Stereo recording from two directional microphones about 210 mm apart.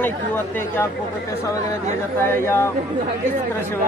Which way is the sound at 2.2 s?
10° left (ahead or behind).